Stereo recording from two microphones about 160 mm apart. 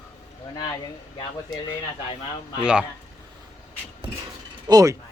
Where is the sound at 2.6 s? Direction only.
5° right (ahead or behind).